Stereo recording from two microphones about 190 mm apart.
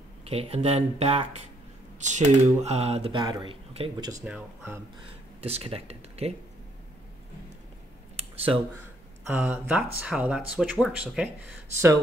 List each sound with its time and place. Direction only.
0.2 s speech: 30° right (ahead or behind)
4.2 s speech: 5° right (ahead or behind)
5.4 s speech: 30° right (ahead or behind)
8.2 s a sound: 30° right (ahead or behind)
9.3 s speech: 10° right (ahead or behind)